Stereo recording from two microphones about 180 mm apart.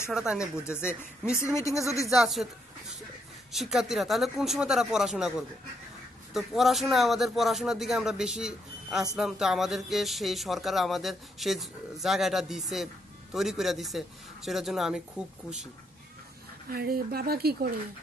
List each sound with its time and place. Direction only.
0.1 s speech: 5° right (ahead or behind)
0.7 s speech: 15° left (ahead or behind)
2.0 s speech: centre (ahead or behind)
3.5 s speech: centre (ahead or behind)
6.3 s speech: centre (ahead or behind)
16.6 s speech: 55° right (ahead or behind)